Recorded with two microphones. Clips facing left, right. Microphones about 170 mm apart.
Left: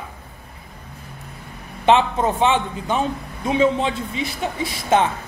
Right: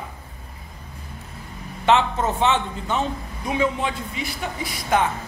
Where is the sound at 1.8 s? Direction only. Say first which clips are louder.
Left 3 dB; 15° left (ahead or behind).